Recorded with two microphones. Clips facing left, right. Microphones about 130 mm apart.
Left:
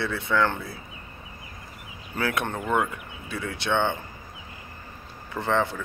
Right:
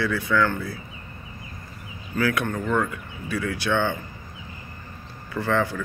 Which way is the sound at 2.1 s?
25° left (ahead or behind).